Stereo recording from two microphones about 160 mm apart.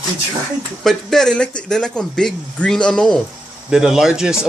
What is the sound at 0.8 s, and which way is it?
Speech, 5° left (ahead or behind).